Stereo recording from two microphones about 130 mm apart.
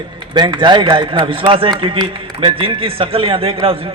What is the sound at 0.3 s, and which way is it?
A man's voice, 35° right (ahead or behind).